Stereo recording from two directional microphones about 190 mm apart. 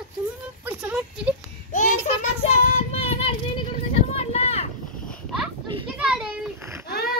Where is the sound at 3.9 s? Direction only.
30° left (ahead or behind).